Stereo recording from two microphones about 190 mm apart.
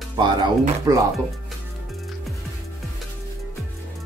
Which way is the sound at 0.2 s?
20° right (ahead or behind).